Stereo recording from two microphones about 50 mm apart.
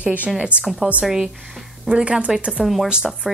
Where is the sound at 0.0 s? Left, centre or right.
Right.